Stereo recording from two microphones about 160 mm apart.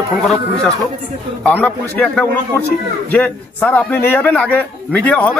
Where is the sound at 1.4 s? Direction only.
10° left (ahead or behind).